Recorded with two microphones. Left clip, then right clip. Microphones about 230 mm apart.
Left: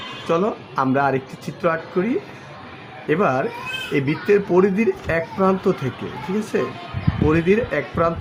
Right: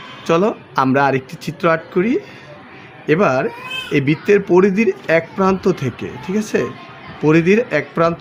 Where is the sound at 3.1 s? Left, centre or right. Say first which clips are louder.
Right 4 dB; right.